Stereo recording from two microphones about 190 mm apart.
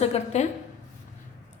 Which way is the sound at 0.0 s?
35° left (ahead or behind).